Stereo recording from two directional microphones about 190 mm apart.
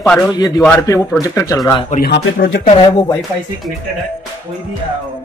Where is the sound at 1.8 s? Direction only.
50° left (ahead or behind).